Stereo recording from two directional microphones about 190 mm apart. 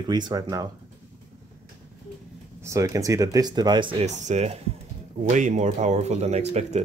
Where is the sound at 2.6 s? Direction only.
15° right (ahead or behind).